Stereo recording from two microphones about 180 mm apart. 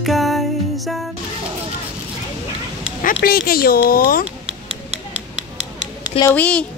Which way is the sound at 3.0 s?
55° left (ahead or behind).